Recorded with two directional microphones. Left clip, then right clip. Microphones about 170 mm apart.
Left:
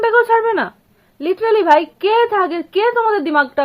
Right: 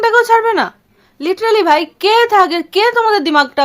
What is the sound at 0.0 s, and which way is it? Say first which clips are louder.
Speech: right 3 dB; 25° right (ahead or behind).